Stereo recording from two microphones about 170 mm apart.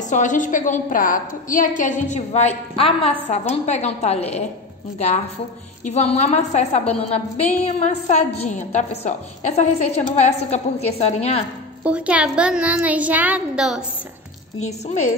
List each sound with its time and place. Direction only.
0.1 s a woman's voice: 50° left (ahead or behind)
11.8 s a woman's voice: 5° right (ahead or behind)
14.6 s a woman's voice: 40° left (ahead or behind)